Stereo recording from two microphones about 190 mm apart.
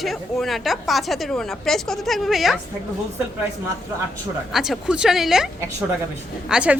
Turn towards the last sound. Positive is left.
turn(degrees=-5)  # may be behind; listen again after turning